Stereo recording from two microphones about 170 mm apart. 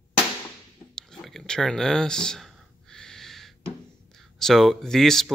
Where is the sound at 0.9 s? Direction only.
Centre (ahead or behind).